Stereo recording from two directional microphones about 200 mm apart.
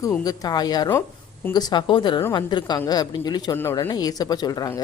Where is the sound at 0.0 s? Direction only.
15° left (ahead or behind).